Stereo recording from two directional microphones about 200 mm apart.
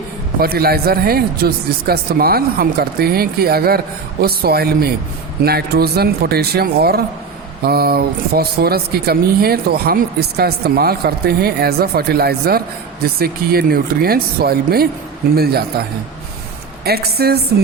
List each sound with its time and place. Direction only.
0.3 s speech: 50° right (ahead or behind)
16.8 s speech: 50° right (ahead or behind)